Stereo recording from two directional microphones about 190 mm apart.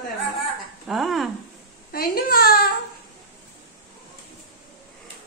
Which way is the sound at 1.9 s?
50° left (ahead or behind).